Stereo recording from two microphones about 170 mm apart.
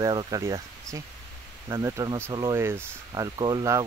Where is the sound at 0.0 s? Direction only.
25° right (ahead or behind).